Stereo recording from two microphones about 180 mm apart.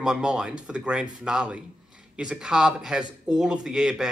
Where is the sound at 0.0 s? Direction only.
5° right (ahead or behind).